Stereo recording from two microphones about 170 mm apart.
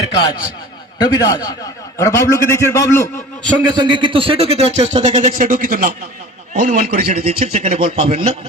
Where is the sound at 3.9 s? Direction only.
30° right (ahead or behind); by 6.1 s 60° right (ahead or behind).